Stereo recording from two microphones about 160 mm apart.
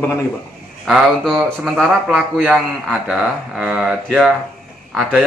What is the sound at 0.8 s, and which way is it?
Speech, centre (ahead or behind).